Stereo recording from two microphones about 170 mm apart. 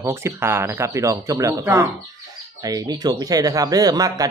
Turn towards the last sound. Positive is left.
turn(degrees=-20)  # may be behind; listen again after turning